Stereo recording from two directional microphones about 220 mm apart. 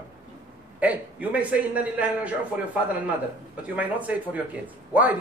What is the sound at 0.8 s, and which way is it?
A man's voice, 5° right (ahead or behind).